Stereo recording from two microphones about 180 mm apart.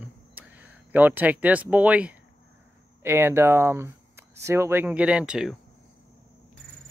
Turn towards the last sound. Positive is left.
turn(degrees=-5)  # may be behind; listen again after turning